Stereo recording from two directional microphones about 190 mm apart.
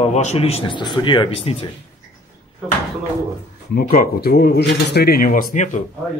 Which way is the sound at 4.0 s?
55° left (ahead or behind).